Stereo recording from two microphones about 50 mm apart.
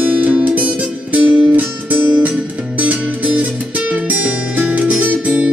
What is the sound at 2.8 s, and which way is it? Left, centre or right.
Music, right.